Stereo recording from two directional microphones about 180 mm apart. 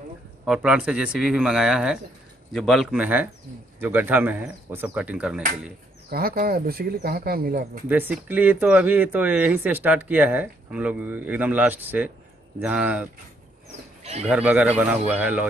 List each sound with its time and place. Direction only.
0.5 s speech: 5° right (ahead or behind)
6.0 s speech: 55° right (ahead or behind)
7.9 s speech: 10° right (ahead or behind)
14.2 s speech: 5° right (ahead or behind)